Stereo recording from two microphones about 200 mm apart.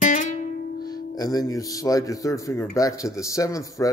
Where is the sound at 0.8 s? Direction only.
20° left (ahead or behind).